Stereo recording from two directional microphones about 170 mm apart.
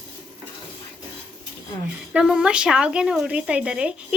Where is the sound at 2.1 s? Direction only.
5° right (ahead or behind).